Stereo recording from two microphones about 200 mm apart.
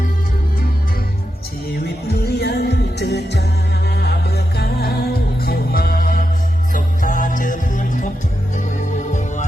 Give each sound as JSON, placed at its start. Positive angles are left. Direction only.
{"t": 2.0, "sound": "music", "side_deg": 55}
{"t": 9.1, "sound": "music", "side_deg": 40}